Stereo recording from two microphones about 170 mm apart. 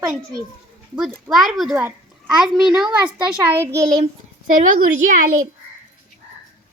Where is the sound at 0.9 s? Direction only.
Centre (ahead or behind).